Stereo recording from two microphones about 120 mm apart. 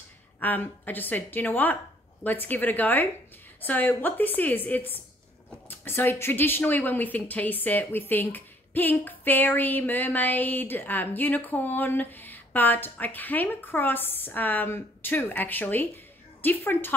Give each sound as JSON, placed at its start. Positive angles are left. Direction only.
{"t": 0.4, "sound": "a woman's voice", "side_deg": 15}